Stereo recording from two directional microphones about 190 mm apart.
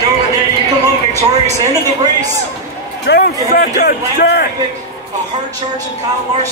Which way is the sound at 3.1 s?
55° left (ahead or behind).